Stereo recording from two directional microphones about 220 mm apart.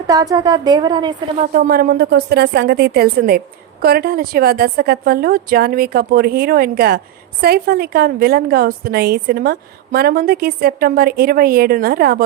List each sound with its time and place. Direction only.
0.1 s a woman's voice: 15° right (ahead or behind)
1.4 s a woman's voice: 40° right (ahead or behind)